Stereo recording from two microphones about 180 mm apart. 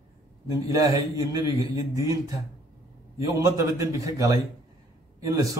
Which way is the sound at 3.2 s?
15° right (ahead or behind).